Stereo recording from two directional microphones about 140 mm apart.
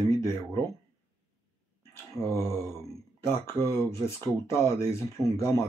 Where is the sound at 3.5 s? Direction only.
20° left (ahead or behind).